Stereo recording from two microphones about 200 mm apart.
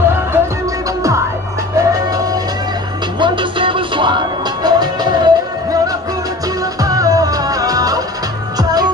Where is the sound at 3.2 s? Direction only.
25° right (ahead or behind).